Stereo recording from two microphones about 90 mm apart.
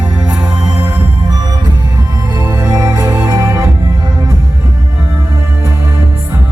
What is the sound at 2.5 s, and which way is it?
Music, 45° right (ahead or behind).